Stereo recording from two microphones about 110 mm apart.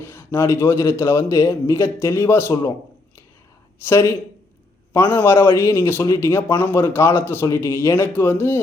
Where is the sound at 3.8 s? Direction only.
25° left (ahead or behind).